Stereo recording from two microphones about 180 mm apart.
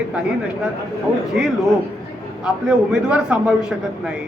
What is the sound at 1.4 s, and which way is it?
A man's voice, 5° right (ahead or behind).